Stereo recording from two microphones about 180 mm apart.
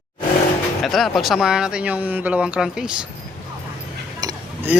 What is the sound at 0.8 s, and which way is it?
Speech, centre (ahead or behind).